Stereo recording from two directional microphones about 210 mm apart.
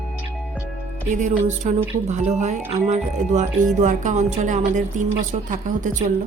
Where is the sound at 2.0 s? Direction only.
35° right (ahead or behind).